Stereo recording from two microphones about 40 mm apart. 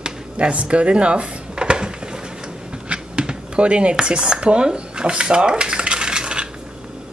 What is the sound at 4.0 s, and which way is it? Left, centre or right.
Speech, centre.